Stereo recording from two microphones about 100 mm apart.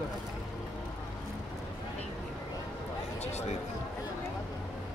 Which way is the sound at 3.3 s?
90° left.